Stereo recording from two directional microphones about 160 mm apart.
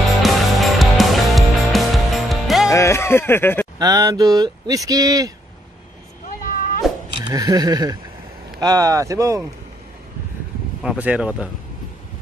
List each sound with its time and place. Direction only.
0.2 s music: centre (ahead or behind)
2.7 s speech: 15° left (ahead or behind)
3.7 s speech: 25° right (ahead or behind)
6.8 s a sound: centre (ahead or behind)
7.2 s speech: 25° right (ahead or behind)
10.8 s speech: 5° right (ahead or behind)